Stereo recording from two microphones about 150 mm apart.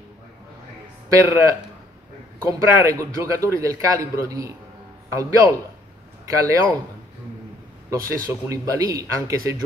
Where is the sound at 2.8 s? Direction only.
20° right (ahead or behind).